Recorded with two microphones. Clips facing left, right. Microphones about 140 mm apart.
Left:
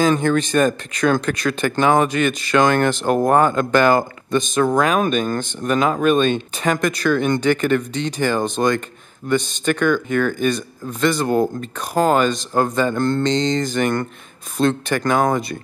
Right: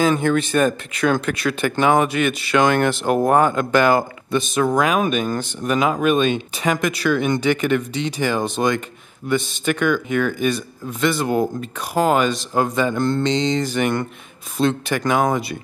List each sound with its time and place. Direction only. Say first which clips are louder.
0.2 s speech: left 1 dB; 35° left (ahead or behind)
0.5 s speech: left 1 dB; 5° right (ahead or behind)
1.2 s speech: left 1 dB; 40° left (ahead or behind)
1.5 s speech: even; 5° right (ahead or behind)